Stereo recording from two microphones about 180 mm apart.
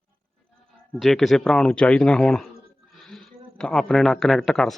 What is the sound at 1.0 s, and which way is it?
Speech, centre (ahead or behind).